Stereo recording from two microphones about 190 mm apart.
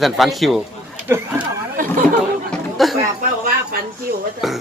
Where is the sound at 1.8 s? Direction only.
45° right (ahead or behind).